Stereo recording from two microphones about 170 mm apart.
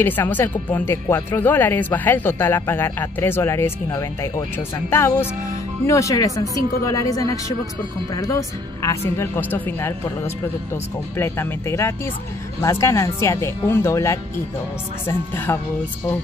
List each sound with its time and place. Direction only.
0.0 s a woman's voice: 10° left (ahead or behind)